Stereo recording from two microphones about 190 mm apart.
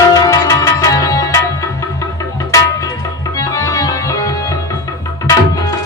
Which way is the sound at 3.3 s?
15° left (ahead or behind).